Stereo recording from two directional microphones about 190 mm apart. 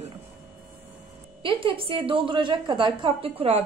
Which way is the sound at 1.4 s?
30° right (ahead or behind).